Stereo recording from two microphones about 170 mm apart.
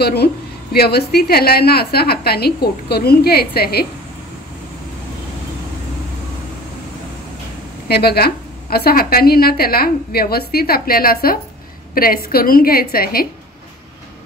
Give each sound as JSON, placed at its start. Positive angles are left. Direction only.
{"t": 0.0, "sound": "a woman's voice", "side_deg": 70}
{"t": 7.9, "sound": "a woman's voice", "side_deg": 70}